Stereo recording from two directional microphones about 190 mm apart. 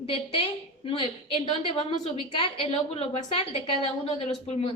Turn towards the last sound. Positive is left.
turn(degrees=30)  # may be behind; listen again after turning